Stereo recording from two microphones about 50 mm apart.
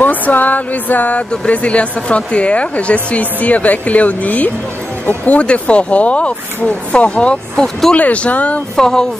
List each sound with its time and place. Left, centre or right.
0.0 s music: left
1.5 s speech: left
7.5 s speech: centre
7.9 s speech: left
8.7 s speech: centre